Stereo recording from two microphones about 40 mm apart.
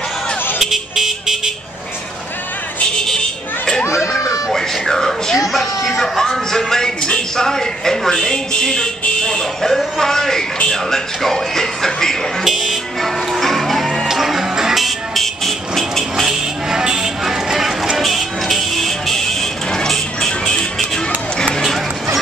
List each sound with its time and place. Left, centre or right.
0.6 s vehicle: centre
4.5 s a sound: centre
5.4 s music: centre
10.7 s speech: centre
12.4 s music: centre
13.0 s music: centre
14.0 s vehicle: centre
16.0 s a sound: centre
17.9 s music: centre
20.2 s a sound: centre
21.5 s dog: centre